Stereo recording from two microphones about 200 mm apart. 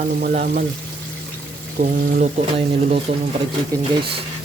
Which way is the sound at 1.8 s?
40° right (ahead or behind).